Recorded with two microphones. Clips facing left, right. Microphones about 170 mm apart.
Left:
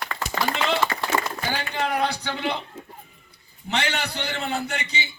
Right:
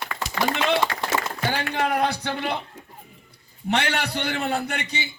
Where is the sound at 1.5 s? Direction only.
55° right (ahead or behind).